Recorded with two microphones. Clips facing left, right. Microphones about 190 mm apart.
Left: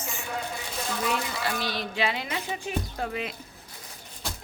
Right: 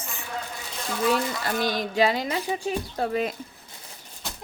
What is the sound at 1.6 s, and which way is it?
Speech, 45° right (ahead or behind).